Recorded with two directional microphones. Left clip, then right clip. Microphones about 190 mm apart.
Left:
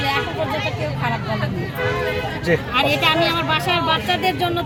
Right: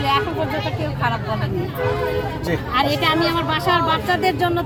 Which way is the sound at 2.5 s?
20° left (ahead or behind).